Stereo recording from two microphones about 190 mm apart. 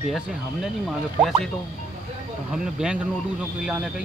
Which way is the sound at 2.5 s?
5° right (ahead or behind).